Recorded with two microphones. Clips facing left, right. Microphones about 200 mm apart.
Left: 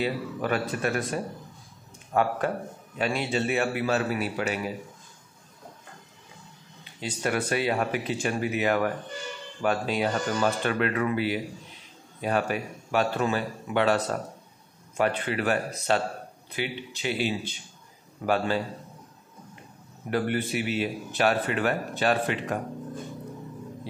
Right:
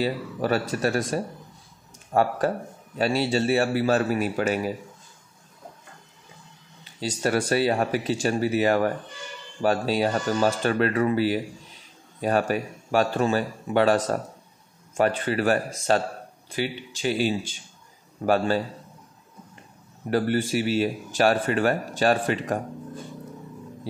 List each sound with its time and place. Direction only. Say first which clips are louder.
0.0 s a man's voice: right 2 dB; 35° right (ahead or behind)
6.8 s a man's voice: right 4 dB; 35° right (ahead or behind)
20.1 s a man's voice: right 4 dB; 40° right (ahead or behind)